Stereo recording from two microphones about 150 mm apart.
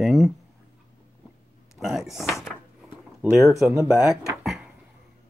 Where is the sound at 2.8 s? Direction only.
15° right (ahead or behind).